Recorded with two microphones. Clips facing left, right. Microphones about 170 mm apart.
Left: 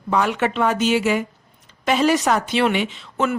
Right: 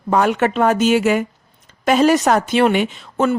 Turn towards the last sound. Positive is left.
turn(degrees=-45)  # may be behind; listen again after turning